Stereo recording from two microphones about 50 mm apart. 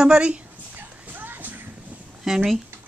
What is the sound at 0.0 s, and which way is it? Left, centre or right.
Speech, centre.